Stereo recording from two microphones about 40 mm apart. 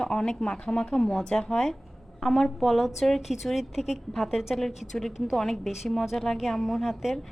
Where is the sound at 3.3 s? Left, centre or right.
Centre.